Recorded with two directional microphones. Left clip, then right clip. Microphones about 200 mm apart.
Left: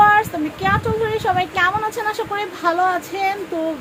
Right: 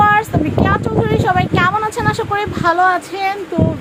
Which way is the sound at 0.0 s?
20° right (ahead or behind).